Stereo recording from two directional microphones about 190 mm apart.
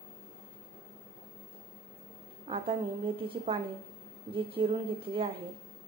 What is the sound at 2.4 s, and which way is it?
A woman's voice, 30° right (ahead or behind).